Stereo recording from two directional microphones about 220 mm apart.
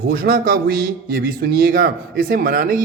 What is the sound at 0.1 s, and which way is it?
A man's voice, 40° right (ahead or behind).